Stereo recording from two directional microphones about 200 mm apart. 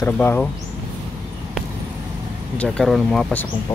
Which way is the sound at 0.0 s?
10° left (ahead or behind).